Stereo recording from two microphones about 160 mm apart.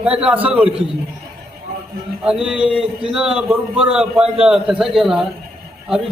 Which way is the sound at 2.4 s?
5° right (ahead or behind).